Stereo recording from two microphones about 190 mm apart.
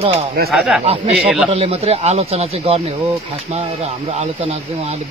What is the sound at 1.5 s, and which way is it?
Speech, 35° right (ahead or behind).